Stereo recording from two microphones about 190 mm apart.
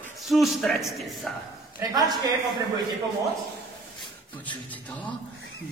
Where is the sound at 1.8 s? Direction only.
20° right (ahead or behind).